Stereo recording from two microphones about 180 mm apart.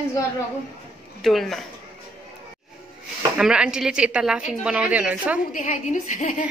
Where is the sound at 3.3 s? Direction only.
5° right (ahead or behind).